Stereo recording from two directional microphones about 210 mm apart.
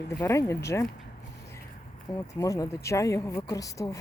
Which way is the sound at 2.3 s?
15° left (ahead or behind).